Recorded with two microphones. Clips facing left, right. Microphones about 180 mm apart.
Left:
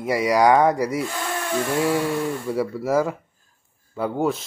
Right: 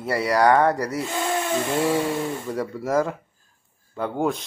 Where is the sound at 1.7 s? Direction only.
20° right (ahead or behind).